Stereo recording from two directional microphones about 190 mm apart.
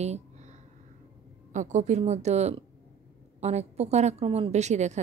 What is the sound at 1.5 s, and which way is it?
A woman's voice, 40° right (ahead or behind).